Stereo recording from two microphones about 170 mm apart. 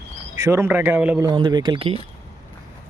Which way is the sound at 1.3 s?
25° right (ahead or behind).